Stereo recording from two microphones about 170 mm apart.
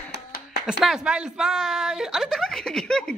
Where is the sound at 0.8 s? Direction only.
5° right (ahead or behind).